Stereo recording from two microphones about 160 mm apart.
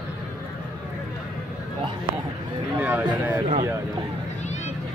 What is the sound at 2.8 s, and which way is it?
Speech, 10° right (ahead or behind).